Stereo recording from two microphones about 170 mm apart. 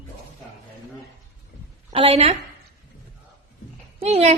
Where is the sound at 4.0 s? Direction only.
40° right (ahead or behind).